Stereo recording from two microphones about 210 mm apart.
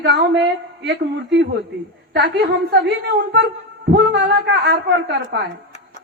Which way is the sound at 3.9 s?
50° right (ahead or behind).